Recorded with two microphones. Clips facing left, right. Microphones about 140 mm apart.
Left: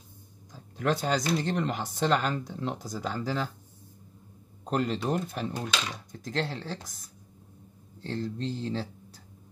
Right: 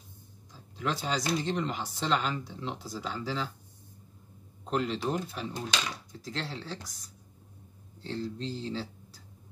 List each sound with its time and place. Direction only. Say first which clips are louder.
0.7 s speech: left 4 dB; 50° left (ahead or behind)
4.6 s speech: left 2 dB; 45° left (ahead or behind)
8.1 s speech: left 2 dB; 45° left (ahead or behind)